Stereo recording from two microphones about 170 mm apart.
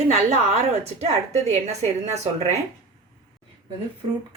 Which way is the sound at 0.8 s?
40° right (ahead or behind).